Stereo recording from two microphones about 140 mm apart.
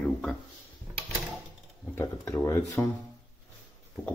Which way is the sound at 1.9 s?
15° left (ahead or behind).